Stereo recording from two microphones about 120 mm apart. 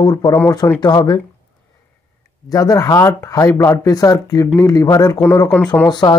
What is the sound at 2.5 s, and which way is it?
Speech, 30° left (ahead or behind).